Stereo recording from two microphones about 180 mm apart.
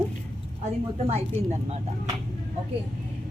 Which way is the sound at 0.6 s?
40° right (ahead or behind).